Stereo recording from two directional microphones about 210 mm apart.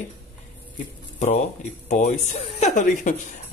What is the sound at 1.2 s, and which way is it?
Speech, 35° left (ahead or behind).